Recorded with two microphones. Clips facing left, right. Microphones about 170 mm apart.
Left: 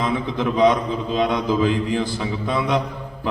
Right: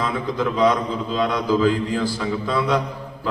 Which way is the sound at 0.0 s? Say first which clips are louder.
Left 1 dB; 20° left (ahead or behind).